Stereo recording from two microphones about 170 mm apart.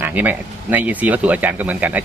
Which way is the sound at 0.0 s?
10° right (ahead or behind).